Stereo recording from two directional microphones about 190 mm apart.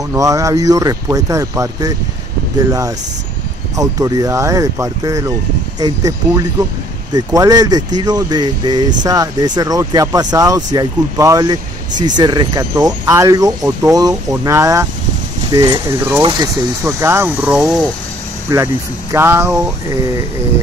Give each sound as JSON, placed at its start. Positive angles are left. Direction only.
{"t": 0.1, "sound": "speech", "side_deg": -15}
{"t": 3.7, "sound": "speech", "side_deg": -15}
{"t": 18.5, "sound": "speech", "side_deg": -15}